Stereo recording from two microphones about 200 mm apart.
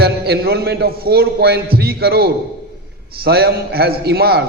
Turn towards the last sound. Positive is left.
turn(degrees=-55)  # may be behind; listen again after turning